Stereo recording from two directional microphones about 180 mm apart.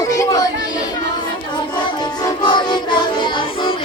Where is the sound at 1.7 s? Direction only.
25° left (ahead or behind).